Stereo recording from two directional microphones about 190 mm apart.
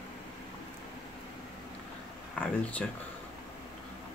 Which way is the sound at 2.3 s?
5° left (ahead or behind).